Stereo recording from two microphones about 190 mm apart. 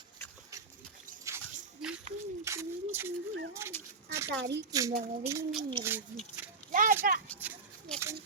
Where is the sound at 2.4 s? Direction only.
15° right (ahead or behind).